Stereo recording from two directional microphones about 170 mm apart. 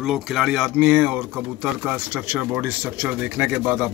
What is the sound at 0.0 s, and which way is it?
Speech, centre (ahead or behind).